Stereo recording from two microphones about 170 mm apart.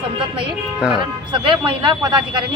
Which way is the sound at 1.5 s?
30° right (ahead or behind).